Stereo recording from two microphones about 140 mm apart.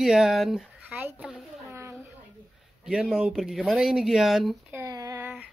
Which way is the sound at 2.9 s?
5° right (ahead or behind).